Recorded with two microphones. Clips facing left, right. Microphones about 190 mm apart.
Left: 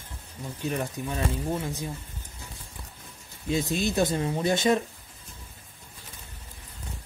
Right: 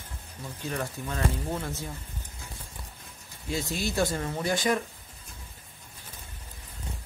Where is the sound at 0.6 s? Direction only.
15° left (ahead or behind).